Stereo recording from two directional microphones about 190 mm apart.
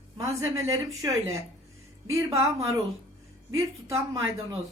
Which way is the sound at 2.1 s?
15° right (ahead or behind).